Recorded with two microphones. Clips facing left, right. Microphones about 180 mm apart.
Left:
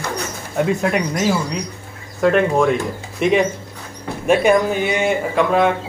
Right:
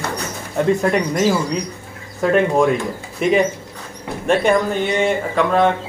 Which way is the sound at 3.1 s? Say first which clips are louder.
Even; centre (ahead or behind).